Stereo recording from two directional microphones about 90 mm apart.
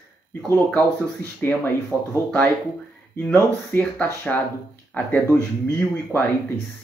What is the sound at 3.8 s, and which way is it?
Speech, 20° left (ahead or behind).